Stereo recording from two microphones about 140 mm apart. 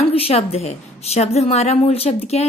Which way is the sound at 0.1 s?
50° left (ahead or behind).